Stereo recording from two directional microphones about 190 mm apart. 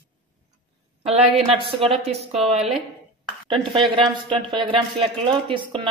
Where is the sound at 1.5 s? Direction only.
30° right (ahead or behind).